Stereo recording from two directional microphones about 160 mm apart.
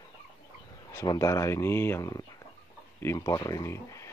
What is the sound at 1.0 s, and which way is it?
Speech, 20° left (ahead or behind).